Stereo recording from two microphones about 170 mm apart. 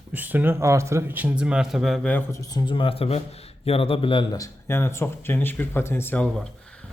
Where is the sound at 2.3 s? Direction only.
20° left (ahead or behind).